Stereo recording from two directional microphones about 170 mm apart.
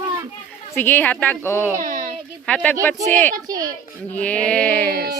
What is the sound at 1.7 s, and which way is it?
Speech, 50° right (ahead or behind).